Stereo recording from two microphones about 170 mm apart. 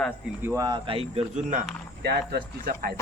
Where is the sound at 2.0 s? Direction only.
70° right (ahead or behind).